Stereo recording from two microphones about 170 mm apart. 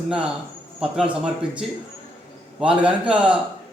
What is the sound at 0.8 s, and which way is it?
A man's voice, 5° right (ahead or behind).